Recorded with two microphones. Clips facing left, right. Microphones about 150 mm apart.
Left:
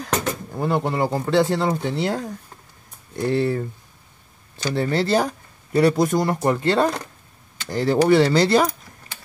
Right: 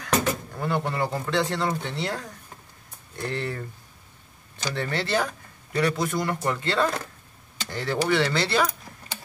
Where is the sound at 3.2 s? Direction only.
10° left (ahead or behind).